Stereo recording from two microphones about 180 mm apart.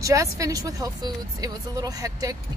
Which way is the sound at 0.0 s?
15° right (ahead or behind).